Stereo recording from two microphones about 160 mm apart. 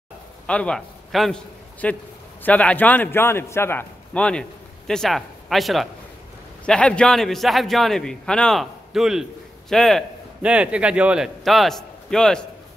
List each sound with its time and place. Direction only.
0.5 s a man's voice: 5° left (ahead or behind)